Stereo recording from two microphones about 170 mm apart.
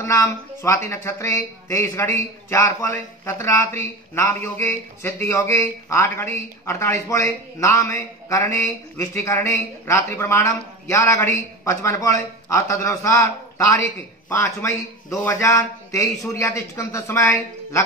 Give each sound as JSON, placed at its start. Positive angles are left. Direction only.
{"t": 0.0, "sound": "speech", "side_deg": 15}